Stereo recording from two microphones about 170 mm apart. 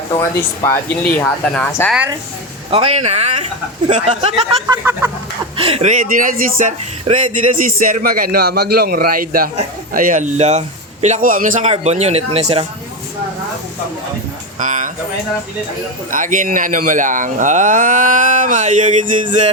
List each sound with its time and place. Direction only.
0.2 s speech: 15° left (ahead or behind)
2.6 s speech: 35° right (ahead or behind)
4.7 s speech: 15° right (ahead or behind)
5.5 s speech: 35° right (ahead or behind)
11.7 s speech: 40° right (ahead or behind)
14.6 s speech: 50° right (ahead or behind)
16.1 s speech: 50° right (ahead or behind)